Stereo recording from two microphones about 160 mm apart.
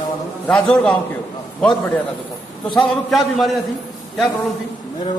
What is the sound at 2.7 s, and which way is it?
Speech, centre (ahead or behind).